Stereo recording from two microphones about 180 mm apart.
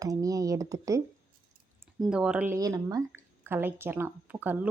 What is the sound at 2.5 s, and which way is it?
A woman's voice, 20° right (ahead or behind).